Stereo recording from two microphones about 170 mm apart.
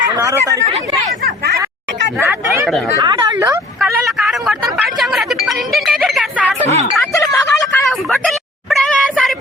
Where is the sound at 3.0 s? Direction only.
25° right (ahead or behind).